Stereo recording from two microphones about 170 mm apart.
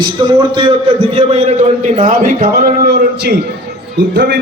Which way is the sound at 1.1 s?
35° right (ahead or behind).